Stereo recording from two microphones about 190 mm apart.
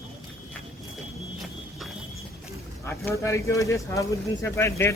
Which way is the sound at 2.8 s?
15° left (ahead or behind).